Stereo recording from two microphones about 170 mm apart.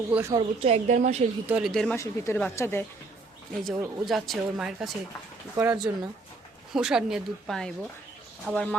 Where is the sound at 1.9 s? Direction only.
15° left (ahead or behind).